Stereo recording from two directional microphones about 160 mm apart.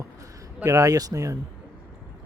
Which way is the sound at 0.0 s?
20° right (ahead or behind).